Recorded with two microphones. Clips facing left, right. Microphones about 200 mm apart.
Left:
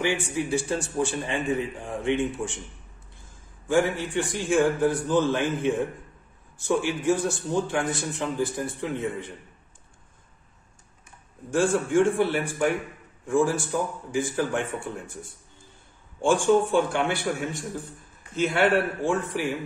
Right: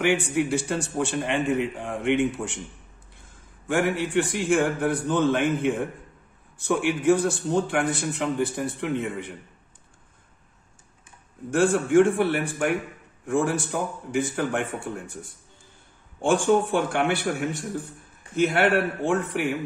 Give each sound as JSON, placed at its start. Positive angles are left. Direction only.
{"t": 0.0, "sound": "a man's voice", "side_deg": -65}
{"t": 3.6, "sound": "a man's voice", "side_deg": -65}
{"t": 11.5, "sound": "a man's voice", "side_deg": -65}
{"t": 16.2, "sound": "a man's voice", "side_deg": -60}